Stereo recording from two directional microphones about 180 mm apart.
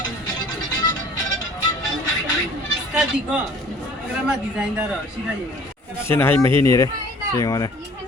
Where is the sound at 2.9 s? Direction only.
5° right (ahead or behind).